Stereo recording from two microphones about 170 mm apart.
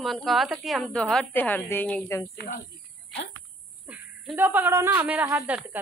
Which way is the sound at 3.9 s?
10° right (ahead or behind).